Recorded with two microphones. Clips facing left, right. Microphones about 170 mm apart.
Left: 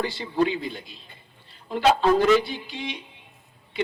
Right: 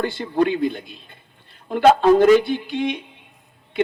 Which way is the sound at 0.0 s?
55° right (ahead or behind).